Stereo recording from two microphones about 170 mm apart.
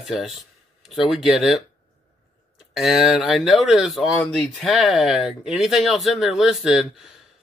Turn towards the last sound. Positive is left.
turn(degrees=-5)  # may be behind; listen again after turning